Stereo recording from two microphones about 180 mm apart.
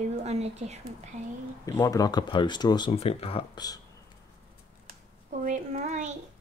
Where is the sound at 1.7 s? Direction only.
20° left (ahead or behind).